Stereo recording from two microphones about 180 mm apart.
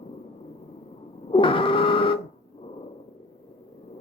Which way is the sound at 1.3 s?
30° left (ahead or behind).